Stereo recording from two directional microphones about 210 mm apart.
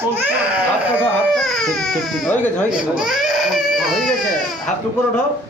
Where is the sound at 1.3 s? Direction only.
Centre (ahead or behind).